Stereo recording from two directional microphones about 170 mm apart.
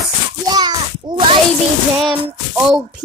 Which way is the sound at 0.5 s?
25° right (ahead or behind).